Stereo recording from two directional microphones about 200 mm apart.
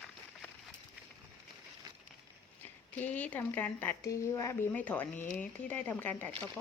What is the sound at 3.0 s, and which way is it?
Speech, 10° left (ahead or behind).